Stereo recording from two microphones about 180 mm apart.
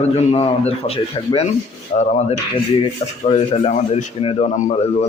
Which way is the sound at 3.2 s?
35° left (ahead or behind).